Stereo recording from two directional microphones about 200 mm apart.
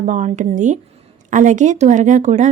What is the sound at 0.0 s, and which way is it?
Speech, 40° right (ahead or behind).